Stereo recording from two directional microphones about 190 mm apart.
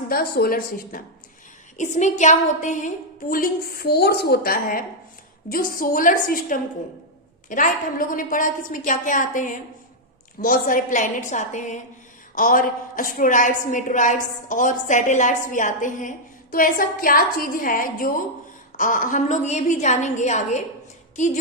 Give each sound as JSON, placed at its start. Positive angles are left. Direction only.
{"t": 0.1, "sound": "a woman's voice", "side_deg": 50}